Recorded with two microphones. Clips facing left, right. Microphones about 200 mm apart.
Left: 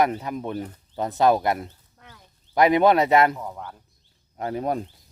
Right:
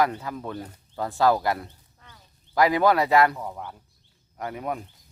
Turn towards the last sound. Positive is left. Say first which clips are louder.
# left 5 dB
turn(degrees=35)  # may be behind; listen again after turning